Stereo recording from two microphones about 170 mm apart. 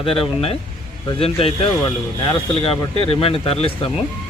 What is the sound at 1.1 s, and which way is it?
Speech, 35° left (ahead or behind).